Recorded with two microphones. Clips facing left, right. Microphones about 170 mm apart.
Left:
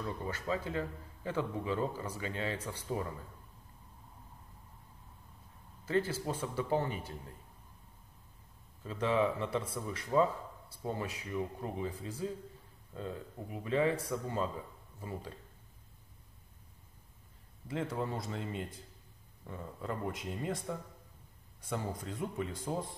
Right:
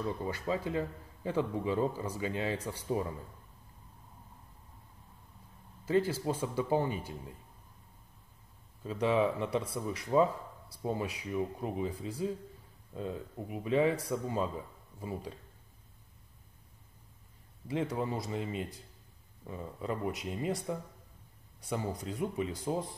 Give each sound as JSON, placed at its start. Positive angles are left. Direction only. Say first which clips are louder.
{"t": 0.0, "sound": "a man's voice", "louder": "right 3 dB", "side_deg": -15}
{"t": 5.9, "sound": "a man's voice", "louder": "right 3 dB", "side_deg": -15}
{"t": 8.8, "sound": "a man's voice", "louder": "right 2 dB", "side_deg": -15}
{"t": 17.6, "sound": "a man's voice", "louder": "right 3 dB", "side_deg": -15}